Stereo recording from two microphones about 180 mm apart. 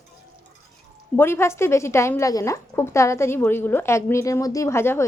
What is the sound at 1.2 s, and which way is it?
A woman's voice, 15° left (ahead or behind).